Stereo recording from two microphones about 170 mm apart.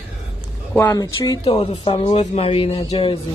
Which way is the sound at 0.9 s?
20° left (ahead or behind).